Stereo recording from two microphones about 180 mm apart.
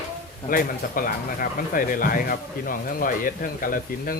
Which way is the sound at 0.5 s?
50° left (ahead or behind).